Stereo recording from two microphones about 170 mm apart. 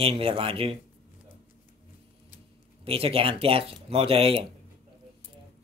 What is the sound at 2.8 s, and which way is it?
Speech, 35° right (ahead or behind).